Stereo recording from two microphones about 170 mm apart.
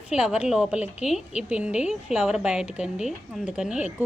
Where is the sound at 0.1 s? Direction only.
5° right (ahead or behind).